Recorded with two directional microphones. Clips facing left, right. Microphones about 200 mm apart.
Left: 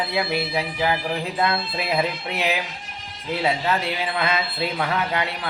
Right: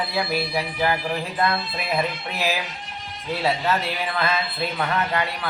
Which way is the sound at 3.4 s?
20° left (ahead or behind).